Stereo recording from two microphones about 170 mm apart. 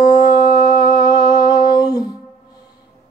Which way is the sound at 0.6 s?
20° left (ahead or behind).